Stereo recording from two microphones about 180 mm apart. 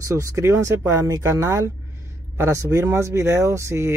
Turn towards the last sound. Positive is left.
turn(degrees=-15)  # may be behind; listen again after turning